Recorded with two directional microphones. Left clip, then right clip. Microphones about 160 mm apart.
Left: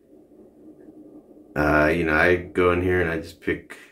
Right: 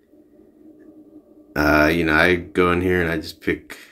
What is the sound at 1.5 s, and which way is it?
Speech, 15° right (ahead or behind).